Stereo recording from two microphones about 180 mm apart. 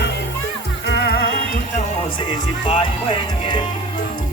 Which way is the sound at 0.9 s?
65° left (ahead or behind).